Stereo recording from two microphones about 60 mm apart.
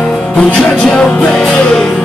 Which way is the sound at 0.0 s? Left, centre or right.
Centre.